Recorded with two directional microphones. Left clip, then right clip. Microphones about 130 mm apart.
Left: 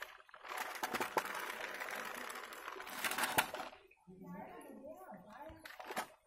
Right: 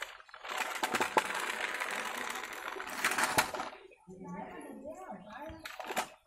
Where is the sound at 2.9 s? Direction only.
50° left (ahead or behind).